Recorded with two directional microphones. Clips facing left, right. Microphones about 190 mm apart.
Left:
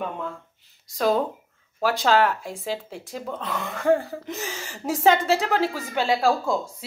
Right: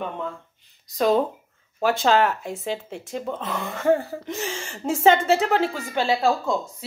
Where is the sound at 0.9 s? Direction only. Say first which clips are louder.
Right 2 dB; centre (ahead or behind).